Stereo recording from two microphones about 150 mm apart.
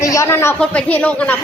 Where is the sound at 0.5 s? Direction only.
5° left (ahead or behind).